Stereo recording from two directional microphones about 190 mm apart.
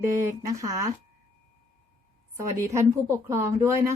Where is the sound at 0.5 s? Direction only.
15° right (ahead or behind).